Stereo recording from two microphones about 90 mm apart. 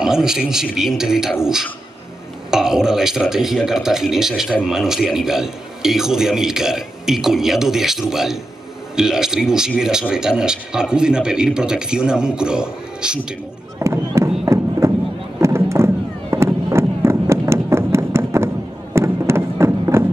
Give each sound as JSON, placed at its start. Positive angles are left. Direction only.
{"t": 0.0, "sound": "a man's voice", "side_deg": -5}
{"t": 13.7, "sound": "a sound", "side_deg": -35}
{"t": 18.9, "sound": "music", "side_deg": -30}